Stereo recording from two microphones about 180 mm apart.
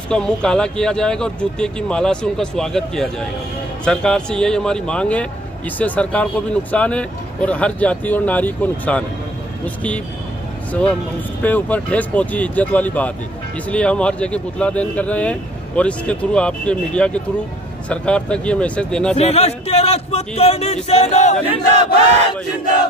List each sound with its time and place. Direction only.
0.1 s speech: 5° left (ahead or behind)
10.7 s speech: 5° left (ahead or behind)
19.1 s speech: 35° left (ahead or behind)